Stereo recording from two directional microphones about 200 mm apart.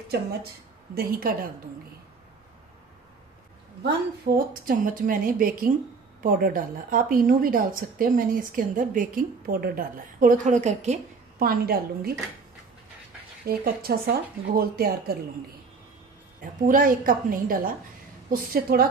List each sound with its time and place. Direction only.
0.9 s a woman's voice: 45° right (ahead or behind)
4.3 s a woman's voice: 55° right (ahead or behind)
4.6 s a woman's voice: 45° right (ahead or behind)
11.4 s a woman's voice: 50° right (ahead or behind)
13.5 s a woman's voice: 50° right (ahead or behind)
16.6 s a woman's voice: 45° right (ahead or behind)